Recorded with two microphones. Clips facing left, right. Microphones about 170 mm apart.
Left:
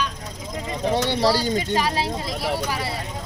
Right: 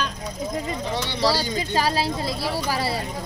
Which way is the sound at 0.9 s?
50° left (ahead or behind).